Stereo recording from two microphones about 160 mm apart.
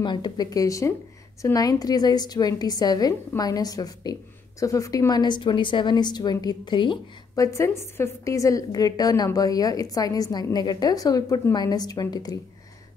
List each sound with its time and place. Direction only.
0.0 s a woman's voice: 30° left (ahead or behind)